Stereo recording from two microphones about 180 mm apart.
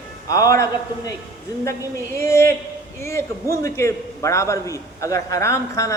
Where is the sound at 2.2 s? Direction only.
15° left (ahead or behind).